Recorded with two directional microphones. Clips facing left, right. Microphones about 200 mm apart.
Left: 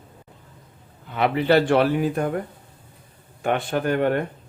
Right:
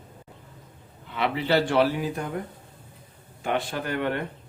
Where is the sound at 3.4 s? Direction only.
55° left (ahead or behind).